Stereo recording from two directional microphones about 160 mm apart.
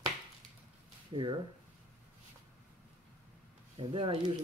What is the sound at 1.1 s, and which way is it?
Speech, 30° right (ahead or behind).